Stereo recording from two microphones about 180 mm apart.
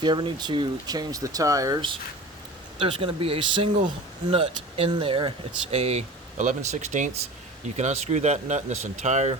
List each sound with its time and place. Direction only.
0.0 s speech: 25° right (ahead or behind)